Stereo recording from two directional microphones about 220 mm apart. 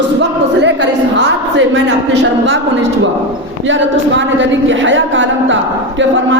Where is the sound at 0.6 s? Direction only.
50° right (ahead or behind).